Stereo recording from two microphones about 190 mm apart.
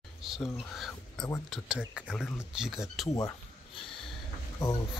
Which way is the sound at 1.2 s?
20° left (ahead or behind).